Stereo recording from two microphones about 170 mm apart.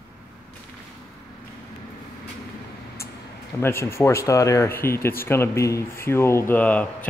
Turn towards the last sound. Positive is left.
turn(degrees=10)  # may be behind; listen again after turning